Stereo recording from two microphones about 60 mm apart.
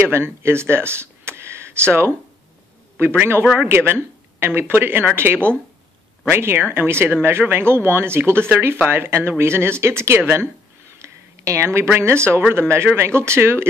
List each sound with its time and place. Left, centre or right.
0.1 s speech: right
11.0 s a sound: right
12.5 s speech: right